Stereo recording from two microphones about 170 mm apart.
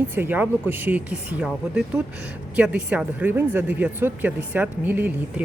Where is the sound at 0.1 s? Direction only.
10° right (ahead or behind).